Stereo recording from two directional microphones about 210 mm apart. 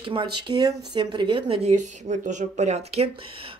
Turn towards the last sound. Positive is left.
turn(degrees=-30)  # may be behind; listen again after turning